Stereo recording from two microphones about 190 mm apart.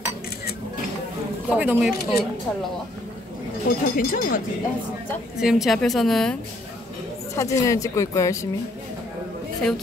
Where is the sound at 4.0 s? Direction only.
50° left (ahead or behind).